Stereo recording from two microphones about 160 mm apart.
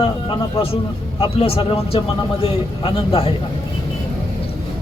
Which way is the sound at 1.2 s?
35° left (ahead or behind).